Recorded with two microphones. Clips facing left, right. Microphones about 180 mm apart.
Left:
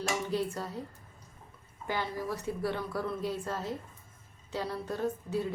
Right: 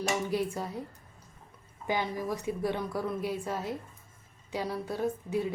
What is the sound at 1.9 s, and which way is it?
A woman's voice, 15° right (ahead or behind).